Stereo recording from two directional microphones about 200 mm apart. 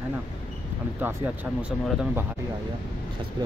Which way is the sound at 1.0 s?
10° right (ahead or behind).